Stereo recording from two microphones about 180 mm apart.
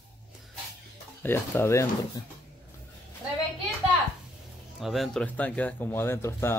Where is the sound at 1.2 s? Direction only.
10° left (ahead or behind).